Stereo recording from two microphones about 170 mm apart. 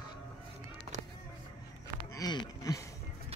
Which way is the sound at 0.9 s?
45° right (ahead or behind).